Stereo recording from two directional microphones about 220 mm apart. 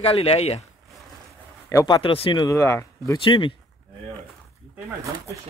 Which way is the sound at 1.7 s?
15° left (ahead or behind).